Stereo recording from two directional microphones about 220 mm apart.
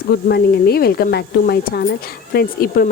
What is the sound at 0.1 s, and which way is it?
Speech, 45° left (ahead or behind).